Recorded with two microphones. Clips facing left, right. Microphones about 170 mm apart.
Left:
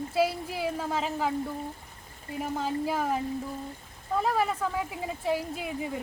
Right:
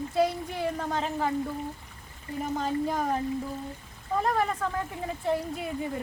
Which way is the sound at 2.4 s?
5° left (ahead or behind).